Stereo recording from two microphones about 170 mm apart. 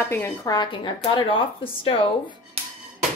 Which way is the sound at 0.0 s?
15° left (ahead or behind).